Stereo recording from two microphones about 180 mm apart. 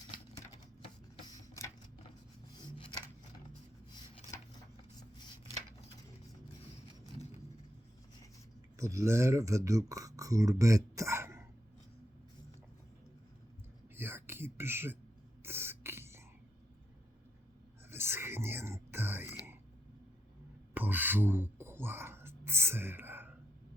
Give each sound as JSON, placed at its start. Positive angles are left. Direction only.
{"t": 3.9, "sound": "a sound", "side_deg": 25}
{"t": 8.8, "sound": "speech", "side_deg": -15}
{"t": 10.6, "sound": "throat clearing", "side_deg": -20}
{"t": 13.9, "sound": "whispering", "side_deg": -10}
{"t": 15.4, "sound": "beatboxing", "side_deg": -15}
{"t": 17.9, "sound": "whispering", "side_deg": -15}
{"t": 20.7, "sound": "a sound", "side_deg": -10}